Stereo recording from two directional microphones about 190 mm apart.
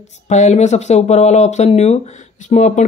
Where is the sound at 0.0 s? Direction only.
40° left (ahead or behind).